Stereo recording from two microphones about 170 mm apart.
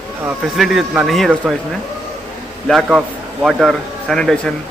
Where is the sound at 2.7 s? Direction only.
Centre (ahead or behind).